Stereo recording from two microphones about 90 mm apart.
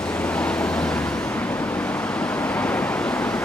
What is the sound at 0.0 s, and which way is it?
Vehicle, 15° left (ahead or behind).